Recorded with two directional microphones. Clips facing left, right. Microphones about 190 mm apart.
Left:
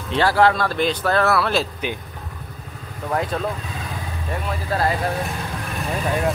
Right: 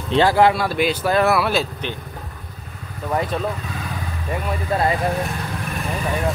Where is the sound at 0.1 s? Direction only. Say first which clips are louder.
Right 2 dB; 20° right (ahead or behind).